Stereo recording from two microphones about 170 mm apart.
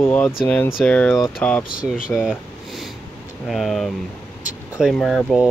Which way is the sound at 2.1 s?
5° right (ahead or behind).